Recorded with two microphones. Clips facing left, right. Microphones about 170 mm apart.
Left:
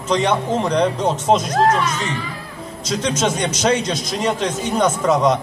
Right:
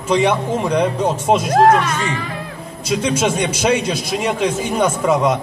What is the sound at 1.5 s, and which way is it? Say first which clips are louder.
Speech: right 4 dB; 55° right (ahead or behind).